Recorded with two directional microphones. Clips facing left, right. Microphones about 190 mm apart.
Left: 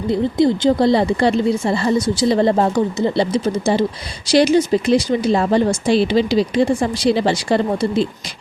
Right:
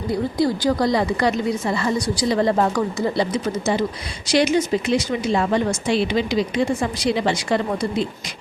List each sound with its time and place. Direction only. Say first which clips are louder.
0.1 s a woman's voice: left 5 dB; 25° left (ahead or behind)